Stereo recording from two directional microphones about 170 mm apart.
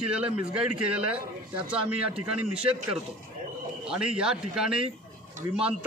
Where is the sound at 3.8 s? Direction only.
5° right (ahead or behind).